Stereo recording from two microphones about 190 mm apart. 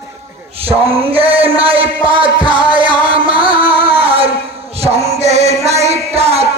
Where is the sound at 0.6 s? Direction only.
30° right (ahead or behind).